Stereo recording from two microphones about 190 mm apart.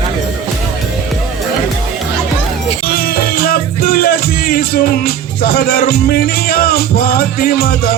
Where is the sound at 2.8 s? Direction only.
50° left (ahead or behind).